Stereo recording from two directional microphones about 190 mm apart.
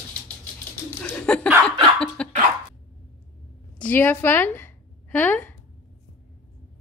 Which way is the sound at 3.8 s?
10° left (ahead or behind).